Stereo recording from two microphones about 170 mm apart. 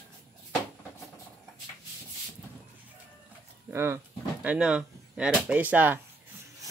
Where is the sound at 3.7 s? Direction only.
15° right (ahead or behind).